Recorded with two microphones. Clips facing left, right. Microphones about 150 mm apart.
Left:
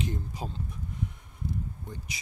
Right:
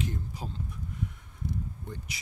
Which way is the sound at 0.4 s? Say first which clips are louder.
Left 2 dB; 20° left (ahead or behind).